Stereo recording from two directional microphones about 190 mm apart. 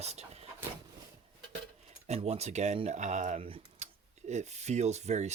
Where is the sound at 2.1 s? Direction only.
35° right (ahead or behind).